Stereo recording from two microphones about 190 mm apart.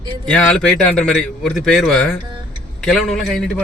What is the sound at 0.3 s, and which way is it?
A man's voice, 5° left (ahead or behind).